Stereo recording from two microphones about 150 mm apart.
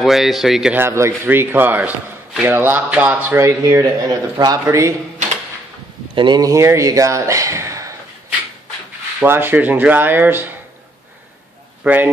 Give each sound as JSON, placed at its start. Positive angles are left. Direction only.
{"t": 0.0, "sound": "speech", "side_deg": 0}
{"t": 0.7, "sound": "speech", "side_deg": -15}
{"t": 6.1, "sound": "speech", "side_deg": -30}
{"t": 9.2, "sound": "speech", "side_deg": -15}
{"t": 11.8, "sound": "speech", "side_deg": -10}